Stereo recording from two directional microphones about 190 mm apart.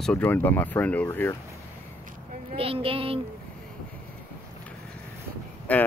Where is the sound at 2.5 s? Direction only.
30° right (ahead or behind).